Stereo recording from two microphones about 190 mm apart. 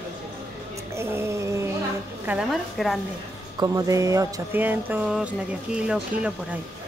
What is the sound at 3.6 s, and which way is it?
Speech, 15° right (ahead or behind).